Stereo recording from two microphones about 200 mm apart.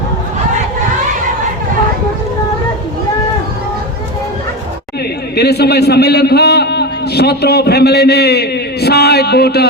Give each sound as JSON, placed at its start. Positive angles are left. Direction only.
{"t": 5.4, "sound": "a man's voice", "side_deg": 55}